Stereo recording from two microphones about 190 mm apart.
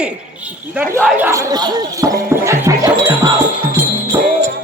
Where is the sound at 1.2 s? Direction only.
15° right (ahead or behind).